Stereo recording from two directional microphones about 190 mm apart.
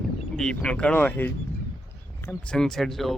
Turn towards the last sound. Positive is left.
turn(degrees=0)  # may be behind; listen again after turning